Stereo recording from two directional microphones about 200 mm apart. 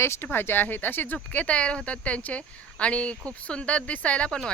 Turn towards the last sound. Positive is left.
turn(degrees=5)  # may be behind; listen again after turning